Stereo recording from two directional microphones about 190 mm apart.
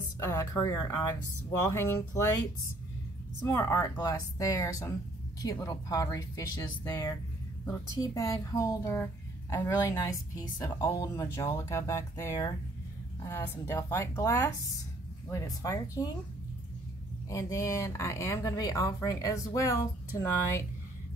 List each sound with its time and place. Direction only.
0.2 s speech: 15° left (ahead or behind)
3.4 s a woman's voice: 15° left (ahead or behind)
17.3 s speech: 15° left (ahead or behind)